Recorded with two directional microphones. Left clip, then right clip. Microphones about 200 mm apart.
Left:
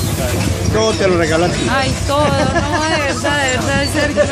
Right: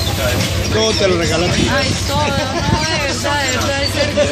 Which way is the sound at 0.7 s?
15° left (ahead or behind).